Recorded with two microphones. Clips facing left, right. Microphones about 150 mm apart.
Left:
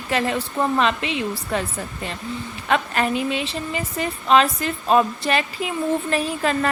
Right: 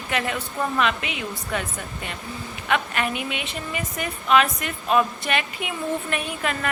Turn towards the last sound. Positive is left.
turn(degrees=35)  # may be behind; listen again after turning